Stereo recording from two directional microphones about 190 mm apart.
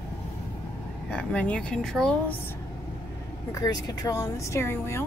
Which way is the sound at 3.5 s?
20° left (ahead or behind).